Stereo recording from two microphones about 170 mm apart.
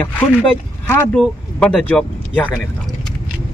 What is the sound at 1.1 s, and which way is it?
Speech, 5° left (ahead or behind).